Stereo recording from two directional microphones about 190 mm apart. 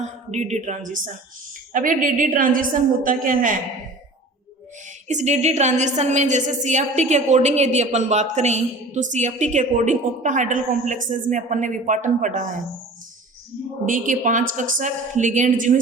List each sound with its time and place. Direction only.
0.0 s a woman's voice: 35° right (ahead or behind)
4.9 s a woman's voice: 40° right (ahead or behind)
13.8 s a woman's voice: 45° right (ahead or behind)